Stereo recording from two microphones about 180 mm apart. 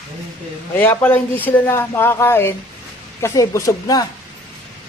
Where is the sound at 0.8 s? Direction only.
10° left (ahead or behind).